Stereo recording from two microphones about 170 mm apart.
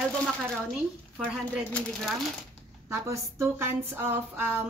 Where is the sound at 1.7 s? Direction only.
5° left (ahead or behind).